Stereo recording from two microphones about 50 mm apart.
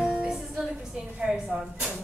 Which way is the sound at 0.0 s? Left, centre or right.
Centre.